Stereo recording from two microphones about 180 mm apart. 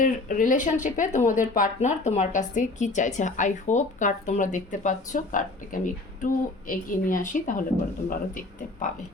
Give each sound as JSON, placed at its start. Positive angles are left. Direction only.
{"t": 0.0, "sound": "speech", "side_deg": 45}